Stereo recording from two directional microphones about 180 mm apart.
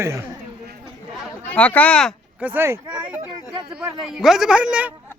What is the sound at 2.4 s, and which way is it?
Speech, 10° right (ahead or behind).